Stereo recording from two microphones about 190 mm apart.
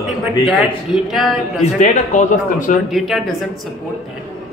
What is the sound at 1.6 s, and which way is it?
A man's voice, 40° left (ahead or behind).